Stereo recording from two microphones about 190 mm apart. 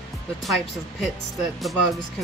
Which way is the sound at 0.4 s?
Centre (ahead or behind).